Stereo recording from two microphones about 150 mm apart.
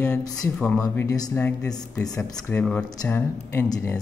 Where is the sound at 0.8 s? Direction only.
25° left (ahead or behind).